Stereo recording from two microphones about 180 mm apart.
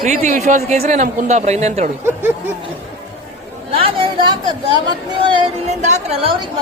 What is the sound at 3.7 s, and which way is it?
Speech, 25° right (ahead or behind).